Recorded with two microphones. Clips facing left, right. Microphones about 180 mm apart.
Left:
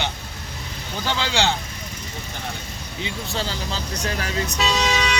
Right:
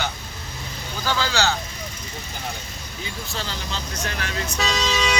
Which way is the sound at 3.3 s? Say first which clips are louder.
Left 3 dB; 30° left (ahead or behind).